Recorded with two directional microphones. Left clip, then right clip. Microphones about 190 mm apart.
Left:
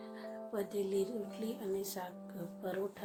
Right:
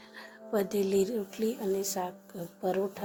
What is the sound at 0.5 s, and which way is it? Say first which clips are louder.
Speech: right 9 dB; 45° right (ahead or behind).